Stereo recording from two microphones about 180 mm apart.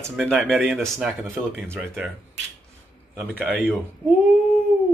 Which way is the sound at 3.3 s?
10° left (ahead or behind).